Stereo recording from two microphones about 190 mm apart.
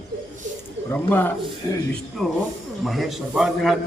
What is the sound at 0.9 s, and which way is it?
A man's voice, 10° left (ahead or behind).